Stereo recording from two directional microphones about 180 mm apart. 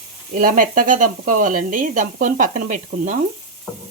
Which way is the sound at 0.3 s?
50° right (ahead or behind).